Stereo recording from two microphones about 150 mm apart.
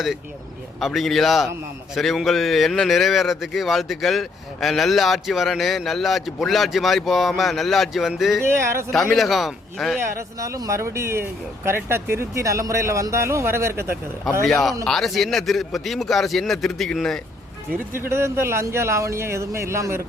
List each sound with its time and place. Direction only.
0.8 s a man's voice: centre (ahead or behind)
8.4 s speech: 15° right (ahead or behind)
9.1 s a man's voice: centre (ahead or behind)
10.0 s speech: 20° right (ahead or behind)
14.4 s a man's voice: centre (ahead or behind)
17.9 s speech: 15° right (ahead or behind)